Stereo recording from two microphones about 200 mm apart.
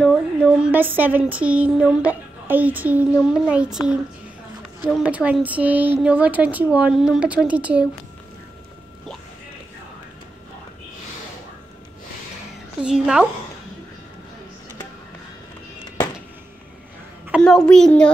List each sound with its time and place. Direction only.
0.0 s a child's voice: centre (ahead or behind)
12.8 s a child's voice: 5° right (ahead or behind)
17.4 s a child's voice: 5° left (ahead or behind)